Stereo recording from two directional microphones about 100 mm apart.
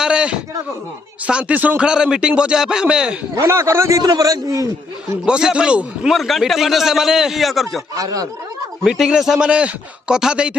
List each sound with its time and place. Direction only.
0.0 s a sound: 10° right (ahead or behind)
1.2 s speech: 15° right (ahead or behind)
3.3 s a man's voice: 30° right (ahead or behind)
4.0 s a man's voice: 40° right (ahead or behind)
5.2 s speech: 10° right (ahead or behind)
6.1 s a man's voice: centre (ahead or behind)
7.9 s a man's voice: 40° right (ahead or behind)
8.8 s speech: 5° right (ahead or behind)